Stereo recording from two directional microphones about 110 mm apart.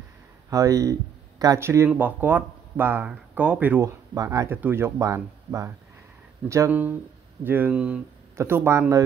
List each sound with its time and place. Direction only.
0.5 s speech: 30° right (ahead or behind); by 3.8 s 15° right (ahead or behind)
3.8 s speech: 30° right (ahead or behind)
4.5 s speech: 20° right (ahead or behind)
6.7 s speech: 15° right (ahead or behind)
8.4 s speech: 20° right (ahead or behind)